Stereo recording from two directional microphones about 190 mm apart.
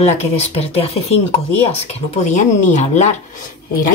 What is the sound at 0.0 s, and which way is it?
Speech, 35° left (ahead or behind).